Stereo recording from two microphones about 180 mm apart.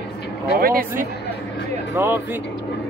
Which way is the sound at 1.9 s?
15° right (ahead or behind).